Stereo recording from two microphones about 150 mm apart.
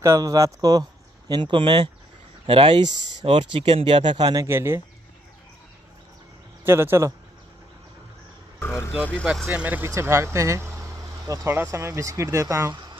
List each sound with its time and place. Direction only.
0.0 s speech: 20° right (ahead or behind)
4.5 s speech: 15° right (ahead or behind)
6.6 s speech: 15° right (ahead or behind)
8.5 s vehicle: 15° left (ahead or behind)
9.2 s speech: 5° right (ahead or behind); by 12.9 s 25° right (ahead or behind)